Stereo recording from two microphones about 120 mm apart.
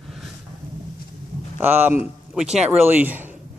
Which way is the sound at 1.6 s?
15° right (ahead or behind).